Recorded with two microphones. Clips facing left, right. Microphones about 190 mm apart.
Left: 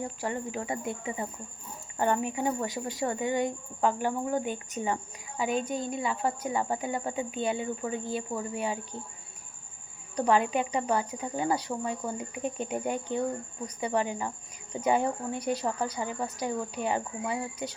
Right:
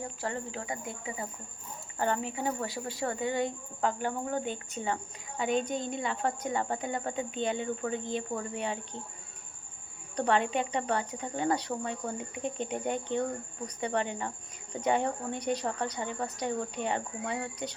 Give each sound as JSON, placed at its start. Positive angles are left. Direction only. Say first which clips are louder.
{"t": 0.2, "sound": "speech", "louder": "left 1 dB", "side_deg": 15}
{"t": 10.2, "sound": "speech", "louder": "left 2 dB", "side_deg": 10}